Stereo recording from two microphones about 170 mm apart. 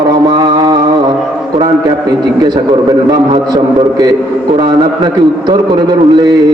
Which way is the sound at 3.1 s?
25° right (ahead or behind).